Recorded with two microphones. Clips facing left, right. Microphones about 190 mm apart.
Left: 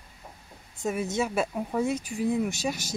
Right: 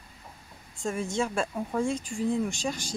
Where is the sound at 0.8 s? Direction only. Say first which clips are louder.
Left 1 dB; 5° left (ahead or behind).